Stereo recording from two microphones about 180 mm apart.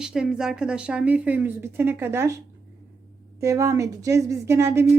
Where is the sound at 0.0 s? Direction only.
5° right (ahead or behind).